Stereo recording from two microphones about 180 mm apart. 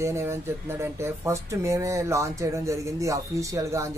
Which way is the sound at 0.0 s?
15° right (ahead or behind).